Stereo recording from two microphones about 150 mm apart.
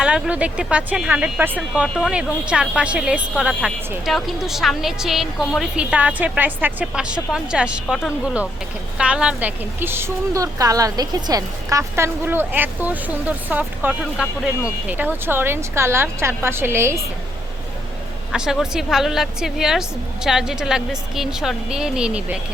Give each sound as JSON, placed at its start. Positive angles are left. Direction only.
{"t": 0.0, "sound": "a woman's voice", "side_deg": -5}
{"t": 18.3, "sound": "a woman's voice", "side_deg": -5}